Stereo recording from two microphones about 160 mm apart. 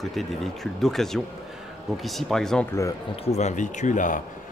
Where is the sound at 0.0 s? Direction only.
Centre (ahead or behind).